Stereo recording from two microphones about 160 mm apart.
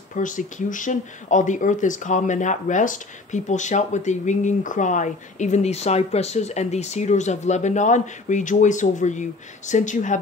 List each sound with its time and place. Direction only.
0.1 s speech: 55° left (ahead or behind)